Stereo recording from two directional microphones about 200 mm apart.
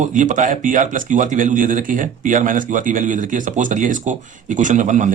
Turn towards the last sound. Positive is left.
turn(degrees=-40)  # may be behind; listen again after turning